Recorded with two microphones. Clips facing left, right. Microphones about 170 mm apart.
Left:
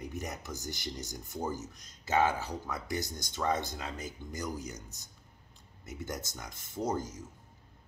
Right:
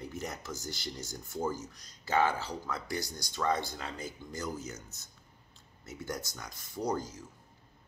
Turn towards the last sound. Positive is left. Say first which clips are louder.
# even
turn(degrees=20)  # may be behind; listen again after turning